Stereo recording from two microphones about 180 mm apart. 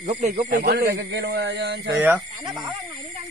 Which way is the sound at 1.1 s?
70° right (ahead or behind).